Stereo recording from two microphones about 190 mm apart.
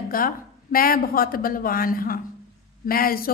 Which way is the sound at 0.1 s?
50° left (ahead or behind).